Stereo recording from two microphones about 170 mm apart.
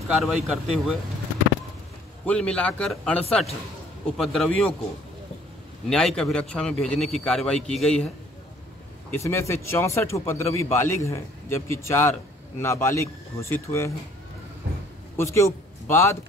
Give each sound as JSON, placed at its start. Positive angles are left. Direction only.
{"t": 0.2, "sound": "a man's voice", "side_deg": 0}
{"t": 2.2, "sound": "a man's voice", "side_deg": 5}
{"t": 5.9, "sound": "a man's voice", "side_deg": 5}
{"t": 9.1, "sound": "speech", "side_deg": 15}
{"t": 15.1, "sound": "a man's voice", "side_deg": 15}